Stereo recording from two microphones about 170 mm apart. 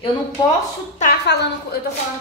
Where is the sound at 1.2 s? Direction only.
85° left.